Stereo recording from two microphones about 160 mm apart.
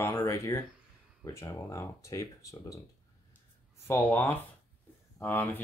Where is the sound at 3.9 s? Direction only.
10° left (ahead or behind).